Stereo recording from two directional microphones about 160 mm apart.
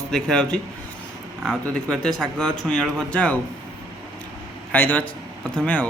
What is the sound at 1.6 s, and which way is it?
Speech, 5° left (ahead or behind).